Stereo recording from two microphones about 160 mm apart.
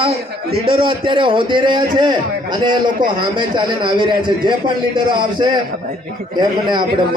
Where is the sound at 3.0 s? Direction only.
60° right (ahead or behind).